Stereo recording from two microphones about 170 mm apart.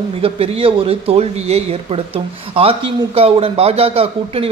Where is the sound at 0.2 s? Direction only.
35° right (ahead or behind).